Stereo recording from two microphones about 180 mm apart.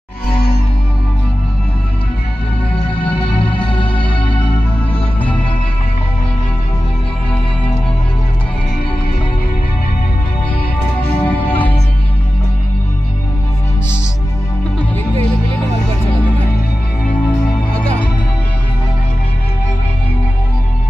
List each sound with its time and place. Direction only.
3.6 s music: 30° left (ahead or behind)
11.2 s music: 10° left (ahead or behind)